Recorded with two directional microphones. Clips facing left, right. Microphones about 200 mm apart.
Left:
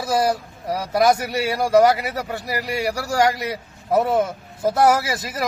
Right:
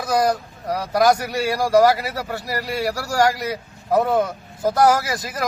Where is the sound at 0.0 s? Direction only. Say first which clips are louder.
Right 1 dB; 5° left (ahead or behind).